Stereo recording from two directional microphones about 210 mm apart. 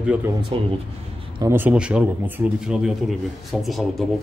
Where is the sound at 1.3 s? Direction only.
10° right (ahead or behind).